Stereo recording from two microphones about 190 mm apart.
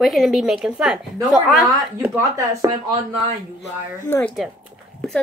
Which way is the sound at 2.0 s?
15° right (ahead or behind).